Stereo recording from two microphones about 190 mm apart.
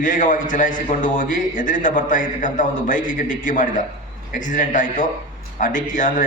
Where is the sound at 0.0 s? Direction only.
45° left (ahead or behind).